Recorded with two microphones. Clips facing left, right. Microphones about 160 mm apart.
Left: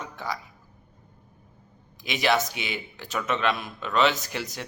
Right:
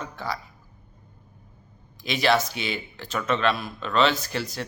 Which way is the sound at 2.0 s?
15° left (ahead or behind).